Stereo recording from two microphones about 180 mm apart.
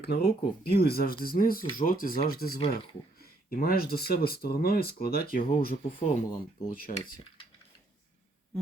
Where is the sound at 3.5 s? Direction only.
55° left (ahead or behind).